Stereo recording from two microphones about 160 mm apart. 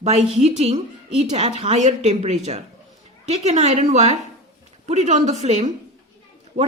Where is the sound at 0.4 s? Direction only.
40° right (ahead or behind).